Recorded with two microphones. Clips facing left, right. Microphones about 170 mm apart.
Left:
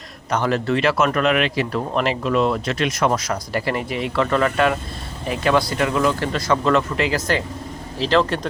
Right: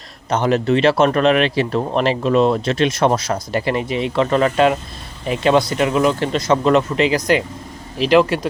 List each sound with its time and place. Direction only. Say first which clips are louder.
0.3 s speech: right 4 dB; 20° right (ahead or behind)